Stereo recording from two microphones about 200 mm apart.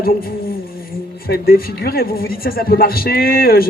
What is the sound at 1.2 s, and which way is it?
Speech, 50° left (ahead or behind).